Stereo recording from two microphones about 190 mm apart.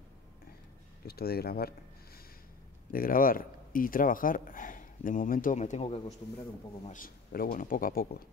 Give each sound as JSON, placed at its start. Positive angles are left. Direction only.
{"t": 1.0, "sound": "speech", "side_deg": 55}
{"t": 2.9, "sound": "speech", "side_deg": 50}
{"t": 6.9, "sound": "speech", "side_deg": 45}